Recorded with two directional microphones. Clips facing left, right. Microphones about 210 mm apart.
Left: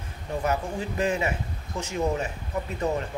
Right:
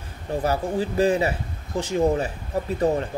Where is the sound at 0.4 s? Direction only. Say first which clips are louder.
Right 4 dB; 35° right (ahead or behind).